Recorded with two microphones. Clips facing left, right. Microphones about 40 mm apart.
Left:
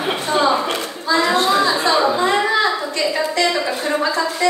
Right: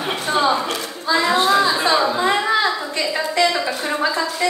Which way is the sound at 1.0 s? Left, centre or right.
Centre.